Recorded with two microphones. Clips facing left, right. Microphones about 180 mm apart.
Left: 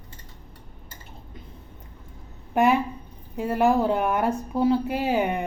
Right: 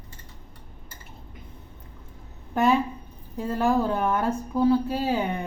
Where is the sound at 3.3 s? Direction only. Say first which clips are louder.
Left 2 dB; 15° left (ahead or behind).